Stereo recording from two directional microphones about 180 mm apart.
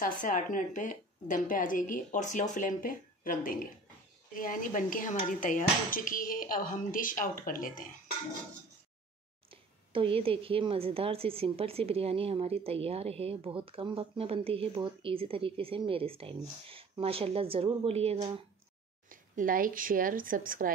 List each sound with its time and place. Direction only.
0.0 s a woman's voice: 45° left (ahead or behind)
9.5 s a woman's voice: 30° right (ahead or behind)
19.0 s a woman's voice: 50° right (ahead or behind)